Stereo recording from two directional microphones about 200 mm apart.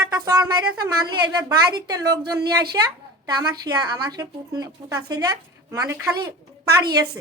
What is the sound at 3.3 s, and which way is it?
A woman's voice, 20° right (ahead or behind).